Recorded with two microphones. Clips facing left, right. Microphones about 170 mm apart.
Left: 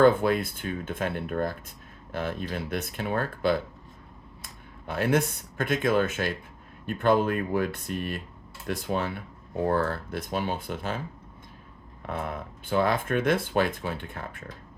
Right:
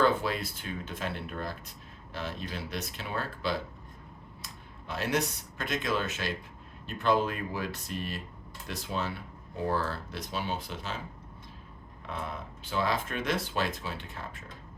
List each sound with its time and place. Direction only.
0.0 s speech: 55° left (ahead or behind)
12.0 s speech: 55° left (ahead or behind)